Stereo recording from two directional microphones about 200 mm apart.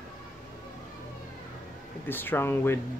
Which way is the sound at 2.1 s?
10° left (ahead or behind).